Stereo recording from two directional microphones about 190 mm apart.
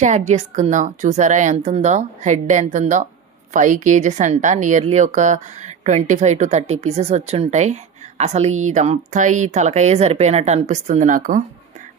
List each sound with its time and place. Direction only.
0.0 s a woman's voice: 35° right (ahead or behind)